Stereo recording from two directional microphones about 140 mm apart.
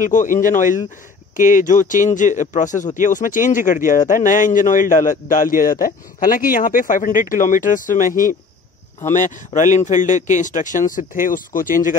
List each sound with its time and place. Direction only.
0.0 s a man's voice: 70° left (ahead or behind)
9.0 s a man's voice: 60° left (ahead or behind)